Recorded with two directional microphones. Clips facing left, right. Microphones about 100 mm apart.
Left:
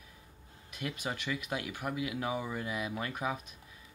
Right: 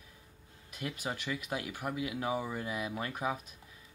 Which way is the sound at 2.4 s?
10° right (ahead or behind).